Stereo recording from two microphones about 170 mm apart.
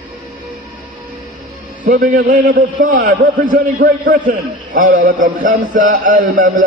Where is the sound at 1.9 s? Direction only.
60° right (ahead or behind).